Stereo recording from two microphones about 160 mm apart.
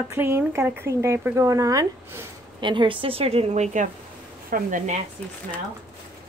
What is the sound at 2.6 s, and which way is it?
A woman's voice, 30° right (ahead or behind).